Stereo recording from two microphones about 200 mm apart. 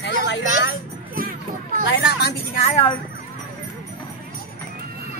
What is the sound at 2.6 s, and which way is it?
Speech, 30° left (ahead or behind).